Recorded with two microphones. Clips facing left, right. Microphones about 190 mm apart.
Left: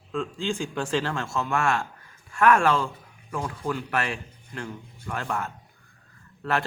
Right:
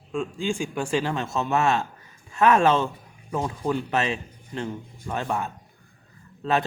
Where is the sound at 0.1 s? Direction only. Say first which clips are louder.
Right 2 dB; 15° right (ahead or behind).